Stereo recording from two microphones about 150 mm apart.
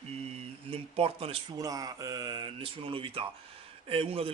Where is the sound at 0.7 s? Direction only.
40° right (ahead or behind).